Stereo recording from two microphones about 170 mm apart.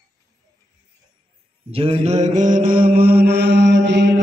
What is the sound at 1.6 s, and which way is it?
Mantra, 35° right (ahead or behind).